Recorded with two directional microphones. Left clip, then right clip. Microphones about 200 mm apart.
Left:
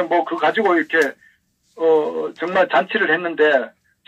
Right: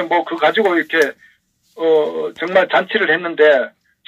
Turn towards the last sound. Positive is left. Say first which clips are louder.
# right 4 dB
turn(degrees=-40)  # may be behind; listen again after turning